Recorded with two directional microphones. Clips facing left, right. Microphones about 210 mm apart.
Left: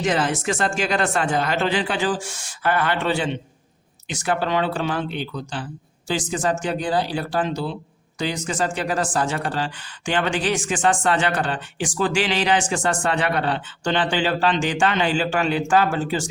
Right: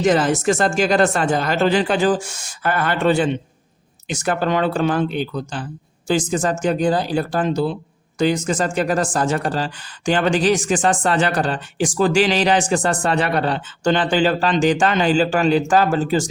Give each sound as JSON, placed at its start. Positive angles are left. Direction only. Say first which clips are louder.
{"t": 0.0, "sound": "speech", "louder": "right 6 dB", "side_deg": -40}